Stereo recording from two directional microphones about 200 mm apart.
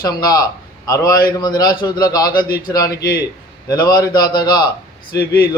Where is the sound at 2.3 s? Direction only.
45° left (ahead or behind).